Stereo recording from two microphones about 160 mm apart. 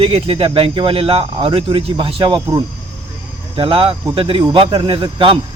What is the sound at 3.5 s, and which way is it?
Speech, 35° right (ahead or behind).